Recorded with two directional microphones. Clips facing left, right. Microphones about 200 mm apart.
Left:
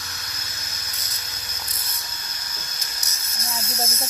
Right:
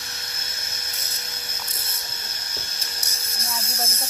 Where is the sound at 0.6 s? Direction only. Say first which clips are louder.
Right 1 dB; 25° right (ahead or behind).